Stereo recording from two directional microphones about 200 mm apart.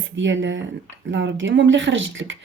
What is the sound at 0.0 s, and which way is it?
Speech, 70° right (ahead or behind).